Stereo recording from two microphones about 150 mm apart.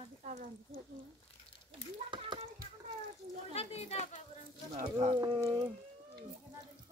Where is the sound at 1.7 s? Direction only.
30° right (ahead or behind).